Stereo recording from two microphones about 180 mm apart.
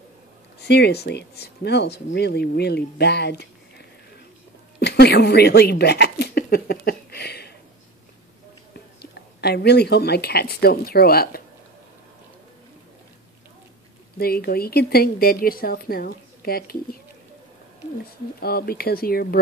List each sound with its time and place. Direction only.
0.6 s a woman's voice: 65° left (ahead or behind)
9.0 s speech: 65° left (ahead or behind)
14.1 s speech: 60° left (ahead or behind)
18.4 s speech: 60° left (ahead or behind)